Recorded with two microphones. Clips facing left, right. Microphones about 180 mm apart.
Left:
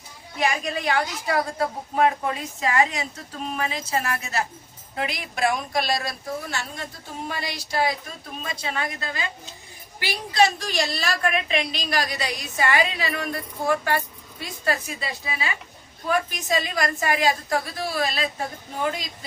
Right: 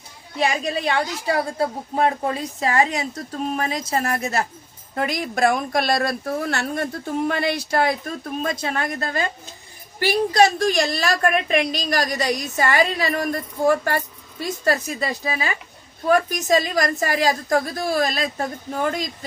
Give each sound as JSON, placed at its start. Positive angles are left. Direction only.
{"t": 0.3, "sound": "a woman's voice", "side_deg": -30}